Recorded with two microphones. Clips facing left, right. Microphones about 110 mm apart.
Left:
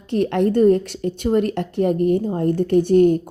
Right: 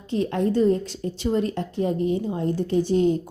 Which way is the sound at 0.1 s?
65° left (ahead or behind).